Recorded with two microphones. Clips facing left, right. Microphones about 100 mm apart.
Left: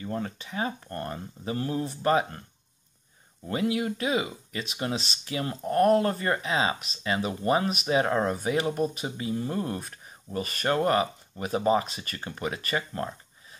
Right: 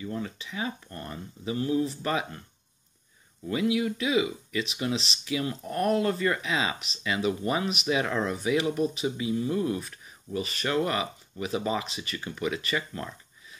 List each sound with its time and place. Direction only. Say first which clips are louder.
0.0 s speech: left 1 dB; 45° left (ahead or behind)
3.4 s speech: right 1 dB; 40° left (ahead or behind)